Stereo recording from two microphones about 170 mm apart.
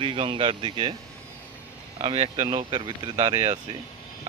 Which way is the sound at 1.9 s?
35° right (ahead or behind).